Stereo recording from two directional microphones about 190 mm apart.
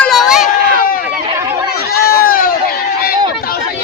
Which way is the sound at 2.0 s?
55° left (ahead or behind).